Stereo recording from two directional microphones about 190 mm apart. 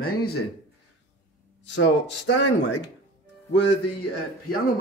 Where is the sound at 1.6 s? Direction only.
70° left (ahead or behind).